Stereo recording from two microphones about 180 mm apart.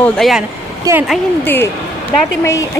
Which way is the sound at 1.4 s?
10° left (ahead or behind).